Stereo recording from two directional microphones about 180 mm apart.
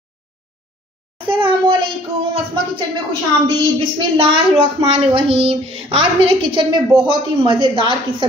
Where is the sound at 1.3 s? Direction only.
30° right (ahead or behind).